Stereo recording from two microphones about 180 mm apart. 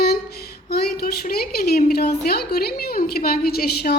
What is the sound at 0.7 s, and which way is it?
A woman's voice, 60° left (ahead or behind).